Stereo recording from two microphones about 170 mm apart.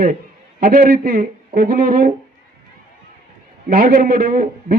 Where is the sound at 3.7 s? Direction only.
55° right (ahead or behind).